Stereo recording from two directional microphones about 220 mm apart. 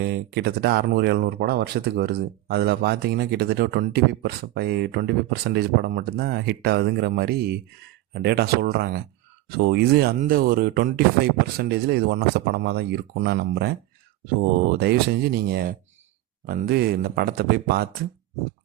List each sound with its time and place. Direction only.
0.0 s speech: 50° right (ahead or behind)